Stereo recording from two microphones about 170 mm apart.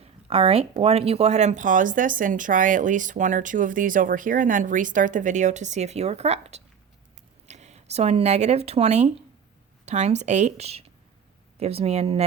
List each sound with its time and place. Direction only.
0.0 s speech: 35° right (ahead or behind)